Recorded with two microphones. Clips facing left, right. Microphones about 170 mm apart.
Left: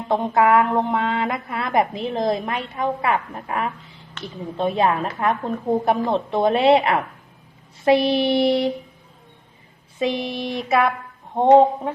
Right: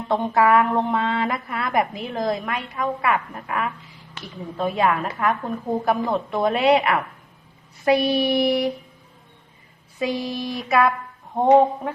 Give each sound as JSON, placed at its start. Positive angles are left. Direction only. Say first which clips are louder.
{"t": 0.1, "sound": "speech", "louder": "left 1 dB", "side_deg": 20}
{"t": 10.0, "sound": "speech", "louder": "left 2 dB", "side_deg": 25}